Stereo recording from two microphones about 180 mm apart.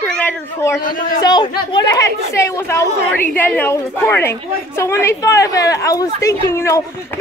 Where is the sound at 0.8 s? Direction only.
50° left (ahead or behind).